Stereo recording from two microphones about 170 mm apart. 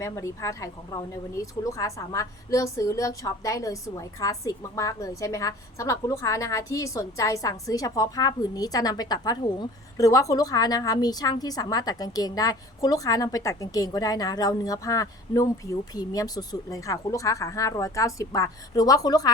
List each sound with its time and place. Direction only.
0.0 s a woman's voice: 15° left (ahead or behind)